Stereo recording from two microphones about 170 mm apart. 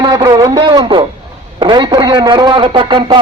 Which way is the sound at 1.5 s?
30° right (ahead or behind).